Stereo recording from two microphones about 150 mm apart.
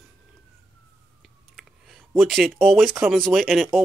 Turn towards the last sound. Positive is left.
turn(degrees=0)  # may be behind; listen again after turning